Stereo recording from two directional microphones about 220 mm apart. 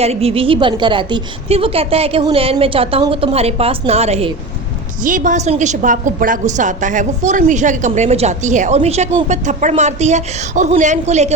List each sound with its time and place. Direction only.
0.0 s a woman's voice: 30° right (ahead or behind)